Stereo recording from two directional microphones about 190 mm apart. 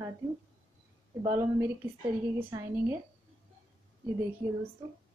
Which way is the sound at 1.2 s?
15° right (ahead or behind).